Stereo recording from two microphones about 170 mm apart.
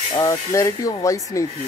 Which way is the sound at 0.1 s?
20° left (ahead or behind).